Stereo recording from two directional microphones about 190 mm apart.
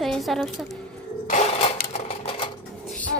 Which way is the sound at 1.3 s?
35° left (ahead or behind).